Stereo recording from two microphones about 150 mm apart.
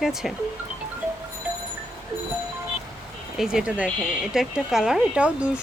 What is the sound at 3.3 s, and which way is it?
Speech, 5° right (ahead or behind).